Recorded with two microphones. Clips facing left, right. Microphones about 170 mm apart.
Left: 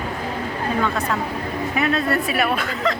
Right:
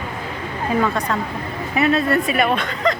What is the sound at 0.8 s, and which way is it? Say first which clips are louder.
Speech: right 1 dB; 5° left (ahead or behind).